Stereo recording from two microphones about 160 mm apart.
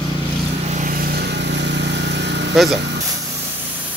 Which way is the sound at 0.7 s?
65° right (ahead or behind).